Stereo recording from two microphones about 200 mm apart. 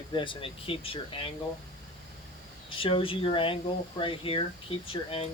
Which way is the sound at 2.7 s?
25° left (ahead or behind).